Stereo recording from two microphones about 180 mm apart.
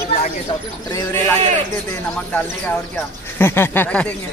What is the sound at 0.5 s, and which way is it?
Speech, 25° left (ahead or behind).